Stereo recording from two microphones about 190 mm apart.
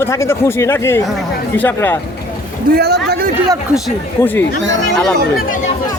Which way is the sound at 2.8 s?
55° right (ahead or behind).